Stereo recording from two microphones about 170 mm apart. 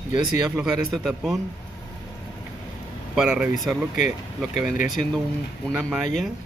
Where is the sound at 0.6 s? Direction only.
Centre (ahead or behind).